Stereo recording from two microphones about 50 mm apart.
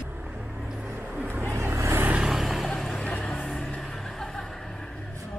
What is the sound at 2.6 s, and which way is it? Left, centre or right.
Vehicle, centre.